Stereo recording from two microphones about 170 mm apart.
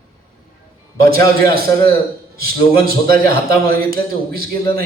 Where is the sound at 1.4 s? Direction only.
60° right (ahead or behind).